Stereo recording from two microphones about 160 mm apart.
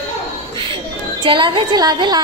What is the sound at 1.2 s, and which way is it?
Speech, 30° right (ahead or behind).